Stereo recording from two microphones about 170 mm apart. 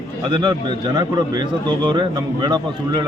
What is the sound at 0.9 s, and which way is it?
A man's voice, 25° right (ahead or behind).